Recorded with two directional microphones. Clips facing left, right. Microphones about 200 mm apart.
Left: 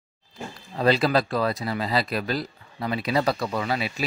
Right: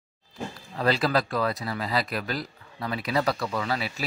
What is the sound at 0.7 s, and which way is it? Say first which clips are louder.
Speech: left 3 dB; 25° left (ahead or behind).